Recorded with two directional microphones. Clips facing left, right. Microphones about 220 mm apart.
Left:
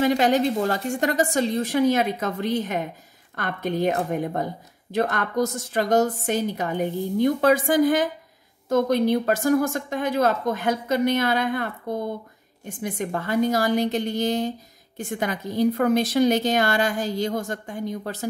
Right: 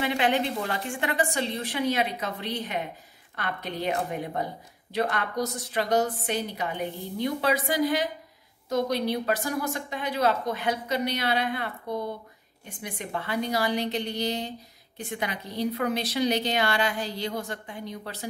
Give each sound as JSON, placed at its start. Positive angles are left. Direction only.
{"t": 0.0, "sound": "speech", "side_deg": 40}